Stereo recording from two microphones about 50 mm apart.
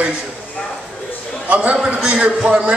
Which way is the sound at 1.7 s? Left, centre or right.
Centre.